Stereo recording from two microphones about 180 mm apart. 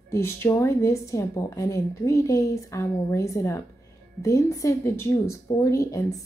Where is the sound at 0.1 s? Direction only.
15° left (ahead or behind).